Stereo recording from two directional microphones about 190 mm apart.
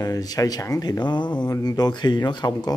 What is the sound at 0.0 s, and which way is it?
Speech, 20° left (ahead or behind).